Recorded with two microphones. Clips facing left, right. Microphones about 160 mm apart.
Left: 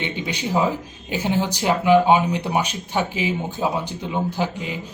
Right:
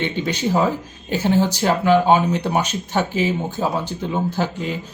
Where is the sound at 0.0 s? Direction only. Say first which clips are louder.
Right 5 dB; 15° left (ahead or behind).